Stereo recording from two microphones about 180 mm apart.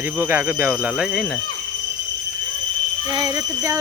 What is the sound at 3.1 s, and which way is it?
Speech, 20° right (ahead or behind).